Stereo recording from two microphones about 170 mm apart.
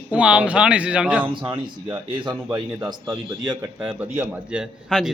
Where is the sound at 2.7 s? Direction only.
15° right (ahead or behind).